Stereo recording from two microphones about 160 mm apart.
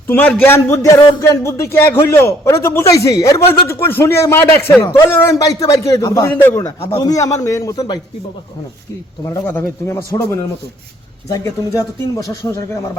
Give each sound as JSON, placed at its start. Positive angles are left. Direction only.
{"t": 0.1, "sound": "a man's voice", "side_deg": 10}
{"t": 9.2, "sound": "a man's voice", "side_deg": 15}